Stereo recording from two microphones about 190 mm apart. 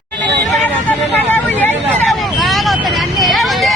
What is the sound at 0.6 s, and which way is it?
Vehicle, 10° left (ahead or behind).